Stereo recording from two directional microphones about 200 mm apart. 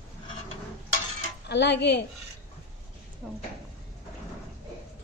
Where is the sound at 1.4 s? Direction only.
60° left (ahead or behind).